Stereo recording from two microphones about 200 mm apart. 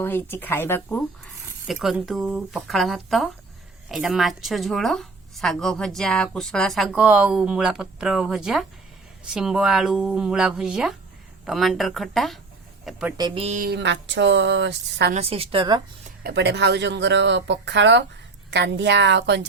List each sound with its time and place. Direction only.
0.0 s speech: 10° left (ahead or behind)
1.5 s speech: centre (ahead or behind)
13.1 s a woman's voice: 25° right (ahead or behind)
13.6 s speech: 55° right (ahead or behind)
15.1 s a woman's voice: 30° right (ahead or behind)
16.0 s speech: 55° right (ahead or behind)